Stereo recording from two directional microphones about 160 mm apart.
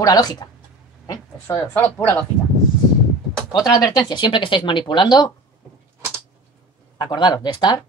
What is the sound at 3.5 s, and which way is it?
Speech, 25° left (ahead or behind).